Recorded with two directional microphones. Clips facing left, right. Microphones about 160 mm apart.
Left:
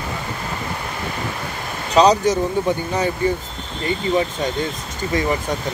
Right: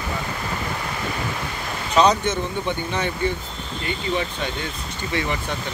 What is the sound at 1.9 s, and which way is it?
Speech, 35° left (ahead or behind).